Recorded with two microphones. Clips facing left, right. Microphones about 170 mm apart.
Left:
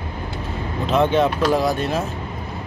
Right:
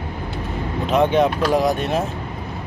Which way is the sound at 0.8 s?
15° right (ahead or behind).